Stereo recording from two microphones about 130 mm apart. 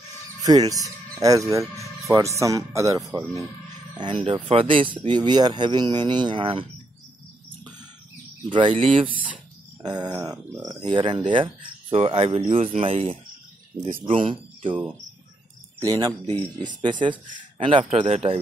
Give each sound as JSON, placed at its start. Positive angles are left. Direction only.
{"t": 0.4, "sound": "speech", "side_deg": -30}
{"t": 4.0, "sound": "speech", "side_deg": -40}
{"t": 8.5, "sound": "speech", "side_deg": -40}
{"t": 10.9, "sound": "speech", "side_deg": -40}
{"t": 15.8, "sound": "speech", "side_deg": -25}
{"t": 17.8, "sound": "speech", "side_deg": -55}